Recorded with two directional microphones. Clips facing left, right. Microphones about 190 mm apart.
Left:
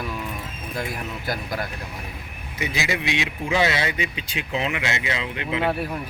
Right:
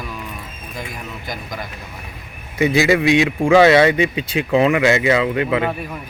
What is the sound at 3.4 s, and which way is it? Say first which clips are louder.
Speech: right 12 dB; 70° right (ahead or behind).